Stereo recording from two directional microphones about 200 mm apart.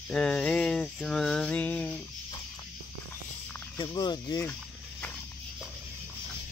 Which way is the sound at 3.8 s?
20° left (ahead or behind).